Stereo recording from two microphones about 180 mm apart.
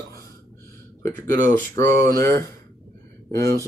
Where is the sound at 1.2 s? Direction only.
15° left (ahead or behind).